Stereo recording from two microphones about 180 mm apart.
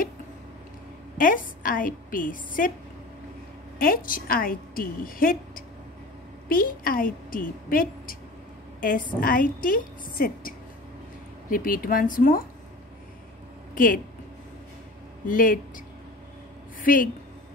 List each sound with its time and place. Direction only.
1.1 s a woman's voice: 50° left (ahead or behind)
3.8 s a woman's voice: 50° left (ahead or behind)
9.2 s a woman's voice: 50° left (ahead or behind)
11.5 s a woman's voice: 50° left (ahead or behind)
13.7 s a woman's voice: 50° left (ahead or behind)
15.2 s a woman's voice: 50° left (ahead or behind)
16.8 s speech: 50° left (ahead or behind)